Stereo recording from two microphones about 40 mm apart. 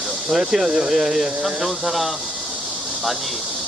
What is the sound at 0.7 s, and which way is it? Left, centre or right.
Speech, centre.